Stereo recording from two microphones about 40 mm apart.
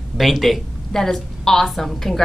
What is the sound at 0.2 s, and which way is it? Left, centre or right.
Speech, centre.